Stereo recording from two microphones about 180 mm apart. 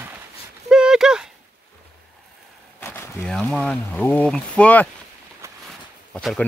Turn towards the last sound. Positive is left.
turn(degrees=0)  # may be behind; listen again after turning